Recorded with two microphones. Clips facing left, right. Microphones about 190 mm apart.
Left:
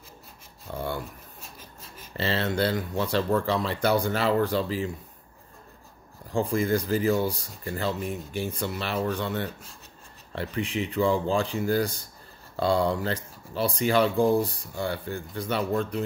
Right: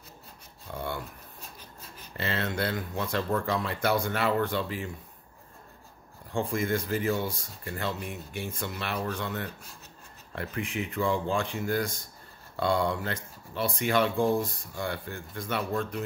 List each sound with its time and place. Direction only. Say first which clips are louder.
0.7 s a sound: left 3 dB; 35° left (ahead or behind)
2.1 s speech: left 5 dB; 30° left (ahead or behind)
6.3 s speech: left 4 dB; 35° left (ahead or behind)